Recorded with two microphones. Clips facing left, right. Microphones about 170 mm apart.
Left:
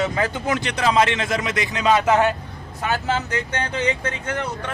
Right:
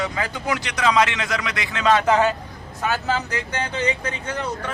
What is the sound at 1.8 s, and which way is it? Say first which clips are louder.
Speech: even; 10° left (ahead or behind).